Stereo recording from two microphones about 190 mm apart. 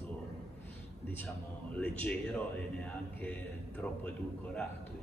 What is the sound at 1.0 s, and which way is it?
A man's voice, 10° left (ahead or behind).